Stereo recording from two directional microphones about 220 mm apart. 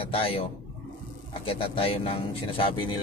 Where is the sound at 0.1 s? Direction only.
25° left (ahead or behind).